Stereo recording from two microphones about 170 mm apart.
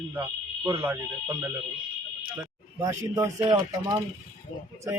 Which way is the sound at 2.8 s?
20° right (ahead or behind).